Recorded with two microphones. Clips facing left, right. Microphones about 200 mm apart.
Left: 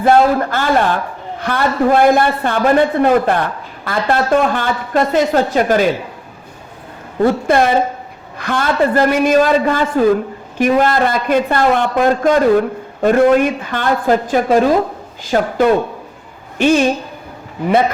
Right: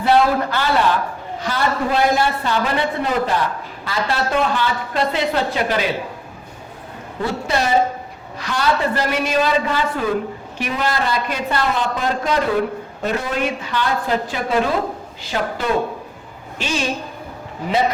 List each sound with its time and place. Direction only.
0.0 s a man's voice: 50° left (ahead or behind)
7.2 s a man's voice: 50° left (ahead or behind)